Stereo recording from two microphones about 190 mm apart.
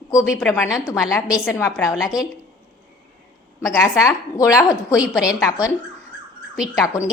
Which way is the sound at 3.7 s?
15° left (ahead or behind).